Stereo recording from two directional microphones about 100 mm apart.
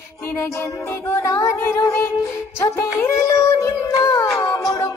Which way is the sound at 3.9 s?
35° left (ahead or behind).